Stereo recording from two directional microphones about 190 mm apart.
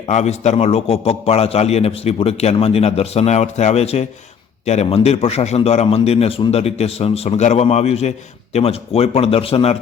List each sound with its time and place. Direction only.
0.1 s a man's voice: 35° left (ahead or behind)